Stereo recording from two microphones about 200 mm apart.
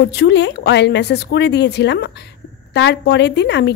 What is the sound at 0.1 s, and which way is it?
A woman's voice, 60° left (ahead or behind).